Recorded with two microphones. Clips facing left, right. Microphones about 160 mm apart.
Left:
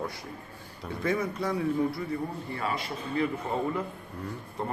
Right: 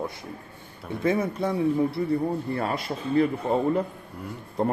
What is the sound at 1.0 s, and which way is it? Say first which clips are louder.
Speech: right 5 dB; 25° right (ahead or behind).